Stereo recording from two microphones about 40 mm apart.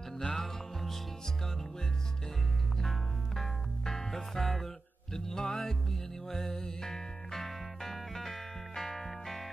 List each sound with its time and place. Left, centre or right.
0.2 s music: centre
2.8 s music: centre